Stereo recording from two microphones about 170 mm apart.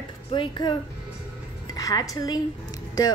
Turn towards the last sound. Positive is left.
turn(degrees=20)  # may be behind; listen again after turning